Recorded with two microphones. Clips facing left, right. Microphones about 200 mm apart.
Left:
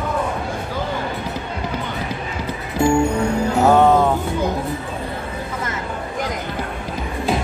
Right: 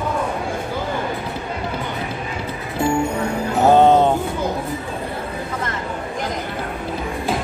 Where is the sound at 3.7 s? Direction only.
25° right (ahead or behind).